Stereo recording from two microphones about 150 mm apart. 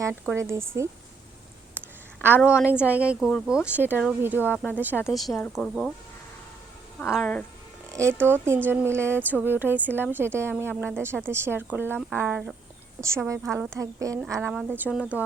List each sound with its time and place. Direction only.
0.0 s speech: 15° right (ahead or behind)
2.8 s speech: 10° right (ahead or behind)
3.2 s speech: 5° left (ahead or behind)
3.5 s speech: 10° right (ahead or behind)
4.5 s speech: 10° left (ahead or behind)
4.8 s speech: 10° right (ahead or behind)
5.1 s speech: centre (ahead or behind)
7.1 s speech: 5° left (ahead or behind)
7.9 s music: 20° right (ahead or behind)
8.3 s speech: 15° right (ahead or behind)
13.0 s a woman's voice: 20° right (ahead or behind)
14.5 s speech: 10° right (ahead or behind)